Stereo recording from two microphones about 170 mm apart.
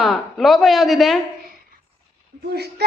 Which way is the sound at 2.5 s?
70° right (ahead or behind).